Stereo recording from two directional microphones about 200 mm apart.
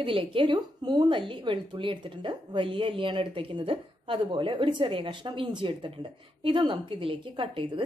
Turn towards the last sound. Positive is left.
turn(degrees=-25)  # may be behind; listen again after turning